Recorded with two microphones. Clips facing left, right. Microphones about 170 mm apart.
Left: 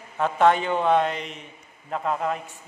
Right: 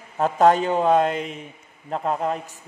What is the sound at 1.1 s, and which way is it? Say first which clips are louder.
Speech: right 5 dB; 5° right (ahead or behind).